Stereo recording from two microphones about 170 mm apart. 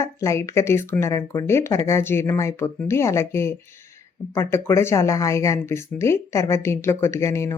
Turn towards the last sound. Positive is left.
turn(degrees=15)  # may be behind; listen again after turning